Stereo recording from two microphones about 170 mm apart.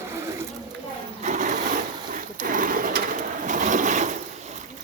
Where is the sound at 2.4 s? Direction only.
55° right (ahead or behind).